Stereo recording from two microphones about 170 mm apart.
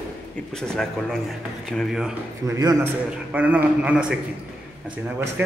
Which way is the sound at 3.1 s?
10° right (ahead or behind).